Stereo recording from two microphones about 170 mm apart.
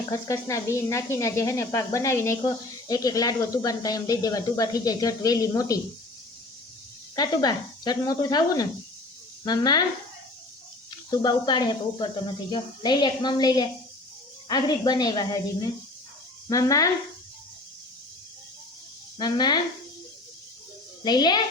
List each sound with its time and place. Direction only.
0.1 s speech: 20° left (ahead or behind)
7.2 s speech: 25° left (ahead or behind)
11.1 s speech: 25° left (ahead or behind)
16.5 s speech: 20° left (ahead or behind)
19.2 s speech: 25° left (ahead or behind)
21.0 s speech: 25° left (ahead or behind)